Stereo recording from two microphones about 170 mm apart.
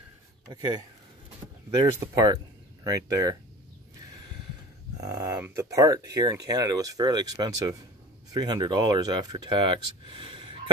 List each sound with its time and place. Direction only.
0.5 s speech: 25° right (ahead or behind)
2.0 s speech: 20° right (ahead or behind)
5.0 s speech: 20° right (ahead or behind)